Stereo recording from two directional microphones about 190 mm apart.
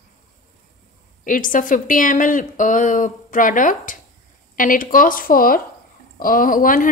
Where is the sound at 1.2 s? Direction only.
45° left (ahead or behind).